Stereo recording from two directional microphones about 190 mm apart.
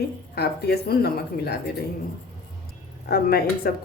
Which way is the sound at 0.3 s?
60° left (ahead or behind).